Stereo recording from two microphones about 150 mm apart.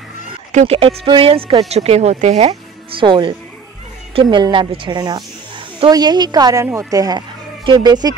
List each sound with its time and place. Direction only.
0.5 s speech: 55° right (ahead or behind)
0.7 s a woman's voice: 35° right (ahead or behind)